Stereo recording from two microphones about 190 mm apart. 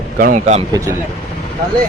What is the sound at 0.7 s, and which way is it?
Speech, 15° right (ahead or behind).